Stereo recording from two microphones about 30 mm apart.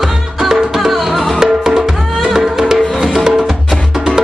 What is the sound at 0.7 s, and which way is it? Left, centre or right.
Music, centre.